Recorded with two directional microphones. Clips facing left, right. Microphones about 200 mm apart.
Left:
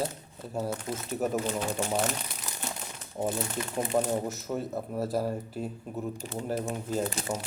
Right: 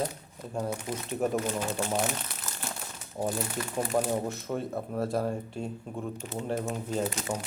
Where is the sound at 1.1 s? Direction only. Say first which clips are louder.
Right 1 dB; centre (ahead or behind).